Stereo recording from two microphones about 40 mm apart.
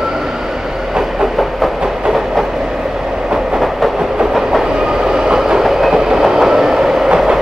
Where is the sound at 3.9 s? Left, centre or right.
Centre.